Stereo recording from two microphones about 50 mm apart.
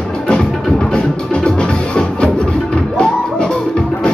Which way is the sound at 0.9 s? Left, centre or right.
Centre.